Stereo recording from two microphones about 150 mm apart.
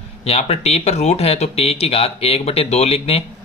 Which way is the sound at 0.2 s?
45° left (ahead or behind).